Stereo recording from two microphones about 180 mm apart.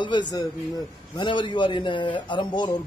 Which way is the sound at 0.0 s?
25° left (ahead or behind).